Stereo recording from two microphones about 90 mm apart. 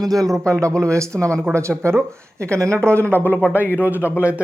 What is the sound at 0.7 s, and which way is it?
Speech, 10° left (ahead or behind).